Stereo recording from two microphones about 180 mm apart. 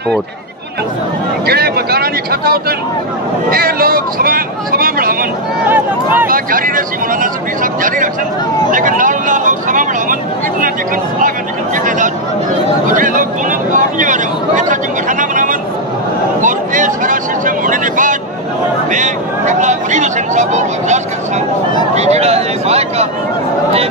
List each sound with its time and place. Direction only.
1.4 s speech: 60° right (ahead or behind)
6.2 s speech: 50° right (ahead or behind)
11.1 s speech: 45° right (ahead or behind)
16.3 s a sound: 45° right (ahead or behind)
18.9 s speech: 45° right (ahead or behind)